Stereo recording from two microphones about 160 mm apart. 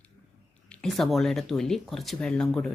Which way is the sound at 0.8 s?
Centre (ahead or behind).